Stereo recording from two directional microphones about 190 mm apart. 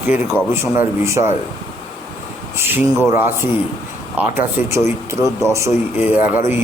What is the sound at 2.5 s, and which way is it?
A man's voice, 10° right (ahead or behind).